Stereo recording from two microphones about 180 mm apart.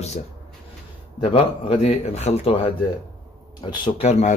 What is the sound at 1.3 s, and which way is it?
A man's voice, 30° left (ahead or behind).